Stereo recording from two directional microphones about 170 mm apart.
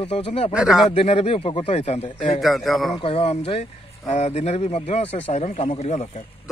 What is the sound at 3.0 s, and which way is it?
Speech, 35° left (ahead or behind).